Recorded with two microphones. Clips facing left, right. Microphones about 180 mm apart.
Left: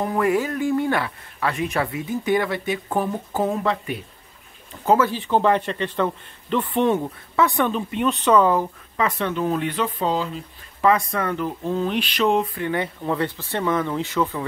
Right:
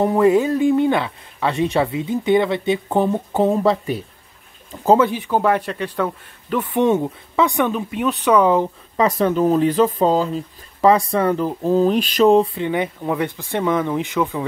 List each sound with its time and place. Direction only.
0.0 s speech: 25° right (ahead or behind)
4.9 s a man's voice: 15° right (ahead or behind)
8.9 s speech: 35° right (ahead or behind)
12.5 s a man's voice: 20° right (ahead or behind)